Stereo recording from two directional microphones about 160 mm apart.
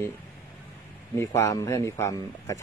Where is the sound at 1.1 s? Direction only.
20° left (ahead or behind).